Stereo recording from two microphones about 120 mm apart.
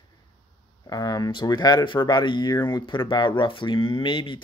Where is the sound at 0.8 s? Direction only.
30° left (ahead or behind).